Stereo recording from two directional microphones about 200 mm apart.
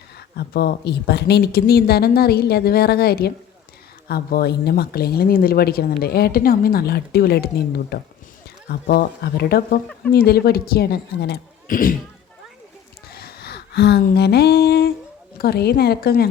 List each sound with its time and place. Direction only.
0.3 s speech: 55° left (ahead or behind)
13.1 s a sound: 50° left (ahead or behind)
15.4 s speech: 50° left (ahead or behind)